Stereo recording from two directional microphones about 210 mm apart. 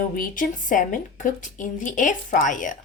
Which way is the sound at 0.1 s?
40° left (ahead or behind).